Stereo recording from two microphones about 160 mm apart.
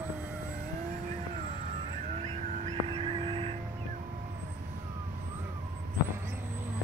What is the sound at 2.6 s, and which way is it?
Music, 35° right (ahead or behind).